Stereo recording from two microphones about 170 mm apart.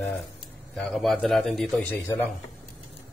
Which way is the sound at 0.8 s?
Centre (ahead or behind).